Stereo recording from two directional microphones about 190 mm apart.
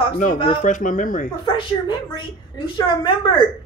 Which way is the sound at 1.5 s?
25° left (ahead or behind).